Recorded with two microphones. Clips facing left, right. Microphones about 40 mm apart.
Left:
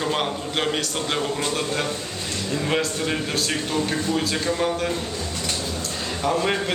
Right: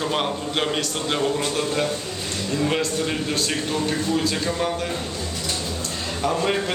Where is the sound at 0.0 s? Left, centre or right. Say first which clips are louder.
Even; centre.